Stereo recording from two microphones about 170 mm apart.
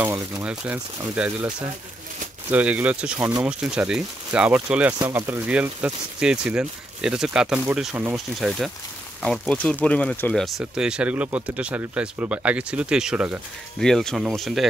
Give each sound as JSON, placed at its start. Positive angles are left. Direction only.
{"t": 0.0, "sound": "speech", "side_deg": -10}
{"t": 2.5, "sound": "speech", "side_deg": -10}